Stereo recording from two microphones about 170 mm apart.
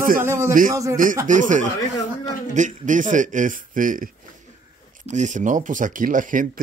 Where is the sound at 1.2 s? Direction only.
50° right (ahead or behind).